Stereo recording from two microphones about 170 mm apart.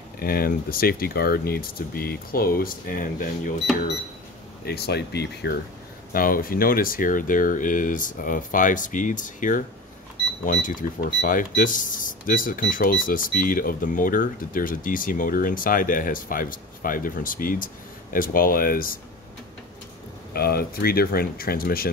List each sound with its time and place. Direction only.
0.2 s speech: 60° left (ahead or behind)
4.6 s speech: 70° left (ahead or behind)
6.1 s speech: 55° left (ahead or behind)
20.3 s speech: 65° left (ahead or behind)